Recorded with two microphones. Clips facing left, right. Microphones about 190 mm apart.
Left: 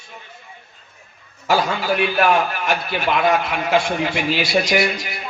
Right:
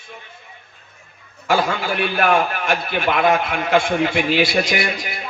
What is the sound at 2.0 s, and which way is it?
A man's voice, 50° right (ahead or behind).